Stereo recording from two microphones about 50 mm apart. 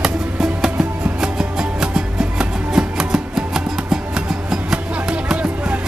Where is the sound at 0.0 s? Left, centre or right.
Centre.